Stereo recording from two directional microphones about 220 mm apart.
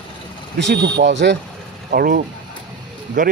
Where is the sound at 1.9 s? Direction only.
40° right (ahead or behind).